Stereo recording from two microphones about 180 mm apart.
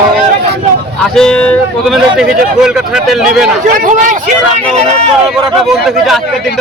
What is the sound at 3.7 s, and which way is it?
Speech, 45° right (ahead or behind).